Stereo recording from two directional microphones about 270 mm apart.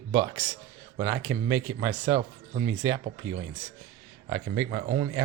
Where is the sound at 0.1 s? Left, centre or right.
Centre.